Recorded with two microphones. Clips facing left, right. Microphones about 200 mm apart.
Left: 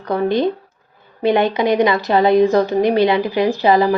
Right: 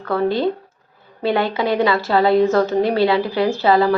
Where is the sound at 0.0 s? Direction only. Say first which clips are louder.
Left 1 dB; 15° left (ahead or behind).